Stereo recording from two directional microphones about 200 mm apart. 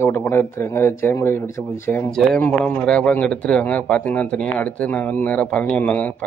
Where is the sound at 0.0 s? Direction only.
10° left (ahead or behind).